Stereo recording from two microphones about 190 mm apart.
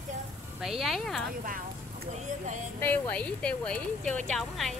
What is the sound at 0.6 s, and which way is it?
Speech, centre (ahead or behind).